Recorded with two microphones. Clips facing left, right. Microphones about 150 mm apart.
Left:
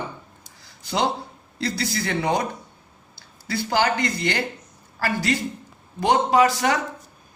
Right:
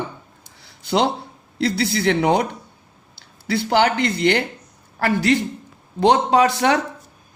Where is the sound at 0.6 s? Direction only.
65° right (ahead or behind).